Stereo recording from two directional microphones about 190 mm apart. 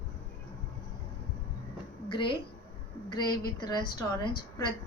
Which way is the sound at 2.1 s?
25° left (ahead or behind).